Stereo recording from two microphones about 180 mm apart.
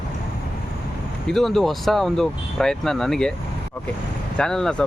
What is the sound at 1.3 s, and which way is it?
Speech, centre (ahead or behind).